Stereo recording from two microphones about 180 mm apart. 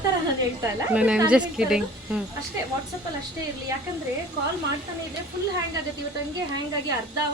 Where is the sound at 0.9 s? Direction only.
5° right (ahead or behind).